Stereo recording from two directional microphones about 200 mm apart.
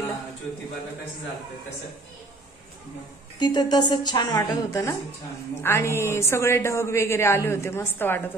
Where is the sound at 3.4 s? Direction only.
20° left (ahead or behind).